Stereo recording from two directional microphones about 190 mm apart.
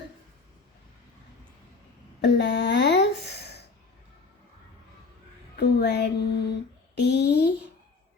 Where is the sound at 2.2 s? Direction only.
65° left (ahead or behind).